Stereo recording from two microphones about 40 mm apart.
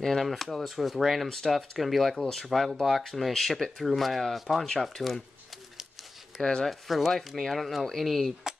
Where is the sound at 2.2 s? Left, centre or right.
Centre.